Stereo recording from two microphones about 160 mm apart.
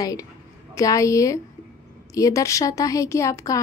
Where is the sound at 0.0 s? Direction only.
20° left (ahead or behind).